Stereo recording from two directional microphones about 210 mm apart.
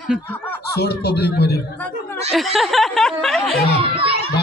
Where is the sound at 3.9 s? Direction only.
25° right (ahead or behind).